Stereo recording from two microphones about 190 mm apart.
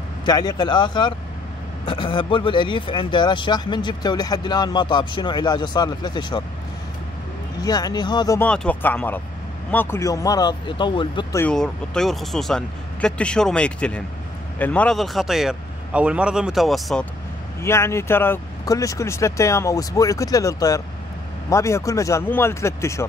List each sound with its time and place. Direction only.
0.2 s speech: 20° left (ahead or behind)
7.6 s speech: 20° left (ahead or behind)
8.4 s speech: 5° left (ahead or behind); by 11.2 s 25° left (ahead or behind)
11.3 s speech: 5° left (ahead or behind)
17.6 s speech: 15° left (ahead or behind)